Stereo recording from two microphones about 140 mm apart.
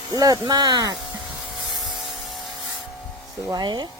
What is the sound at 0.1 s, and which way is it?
Speech, 25° right (ahead or behind).